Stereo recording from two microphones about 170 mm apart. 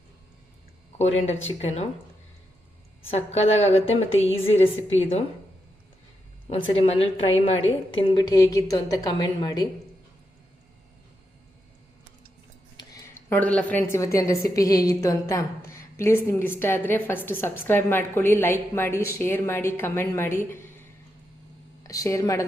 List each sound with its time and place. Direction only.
0.9 s a woman's voice: 40° left (ahead or behind)
3.1 s a woman's voice: 35° left (ahead or behind)
6.5 s a woman's voice: 35° left (ahead or behind)
12.7 s a sound: 20° left (ahead or behind)
13.4 s a woman's voice: 10° left (ahead or behind)
21.8 s a woman's voice: 20° left (ahead or behind)